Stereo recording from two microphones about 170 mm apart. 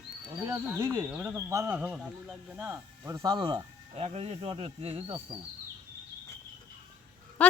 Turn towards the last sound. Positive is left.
turn(degrees=10)  # may be behind; listen again after turning